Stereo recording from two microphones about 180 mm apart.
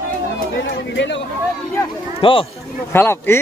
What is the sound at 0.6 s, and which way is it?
Speech, 80° left.